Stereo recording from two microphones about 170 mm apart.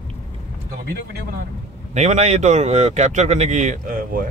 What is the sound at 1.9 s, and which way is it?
Speech, 40° right (ahead or behind).